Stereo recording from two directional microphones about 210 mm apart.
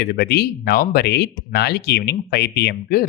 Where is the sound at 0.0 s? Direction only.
50° left (ahead or behind).